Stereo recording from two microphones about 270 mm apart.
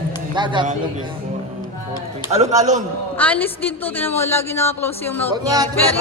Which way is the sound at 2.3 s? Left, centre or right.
Right.